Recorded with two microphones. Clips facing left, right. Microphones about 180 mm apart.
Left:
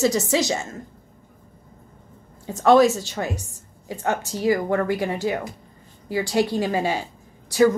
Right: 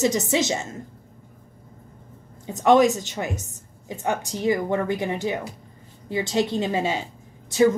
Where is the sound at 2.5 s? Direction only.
15° right (ahead or behind).